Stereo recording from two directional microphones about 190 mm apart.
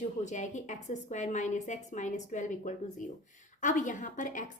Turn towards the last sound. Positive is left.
turn(degrees=45)  # may be behind; listen again after turning